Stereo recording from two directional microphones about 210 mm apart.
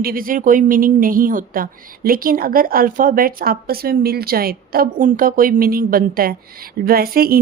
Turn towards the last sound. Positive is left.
turn(degrees=-45)  # may be behind; listen again after turning